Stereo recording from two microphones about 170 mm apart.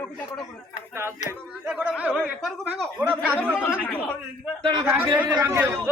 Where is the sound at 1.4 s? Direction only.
Centre (ahead or behind).